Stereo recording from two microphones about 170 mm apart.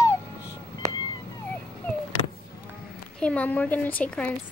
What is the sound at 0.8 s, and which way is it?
Cat, 20° right (ahead or behind).